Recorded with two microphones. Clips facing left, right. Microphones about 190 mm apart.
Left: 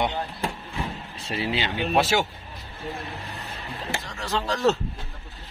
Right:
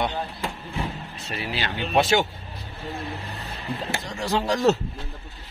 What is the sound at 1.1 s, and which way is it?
Speech, 30° left (ahead or behind).